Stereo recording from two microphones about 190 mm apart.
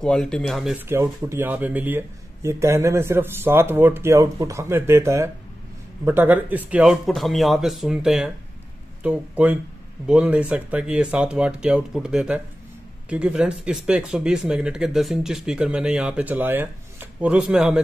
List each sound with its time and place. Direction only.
0.0 s speech: 5° left (ahead or behind)
0.8 s speech: 15° right (ahead or behind)